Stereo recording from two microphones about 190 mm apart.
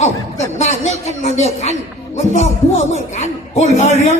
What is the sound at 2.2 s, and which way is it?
Speech, 35° left (ahead or behind).